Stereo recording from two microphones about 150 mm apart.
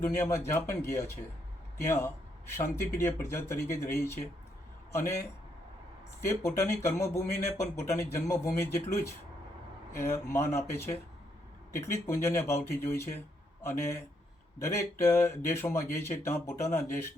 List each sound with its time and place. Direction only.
0.0 s a man's voice: 15° left (ahead or behind)
6.2 s speech: 20° left (ahead or behind)